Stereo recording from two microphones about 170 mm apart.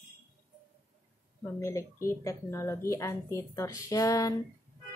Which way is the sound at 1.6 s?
15° left (ahead or behind).